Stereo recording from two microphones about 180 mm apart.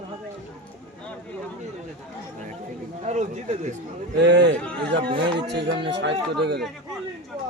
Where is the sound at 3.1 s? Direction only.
40° right (ahead or behind).